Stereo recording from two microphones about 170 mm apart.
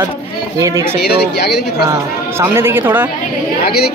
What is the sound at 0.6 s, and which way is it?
Speech, 20° right (ahead or behind).